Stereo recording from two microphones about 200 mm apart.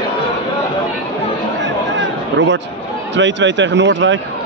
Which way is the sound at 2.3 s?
65° right (ahead or behind).